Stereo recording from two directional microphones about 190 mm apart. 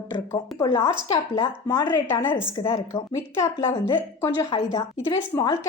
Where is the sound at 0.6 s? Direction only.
25° left (ahead or behind).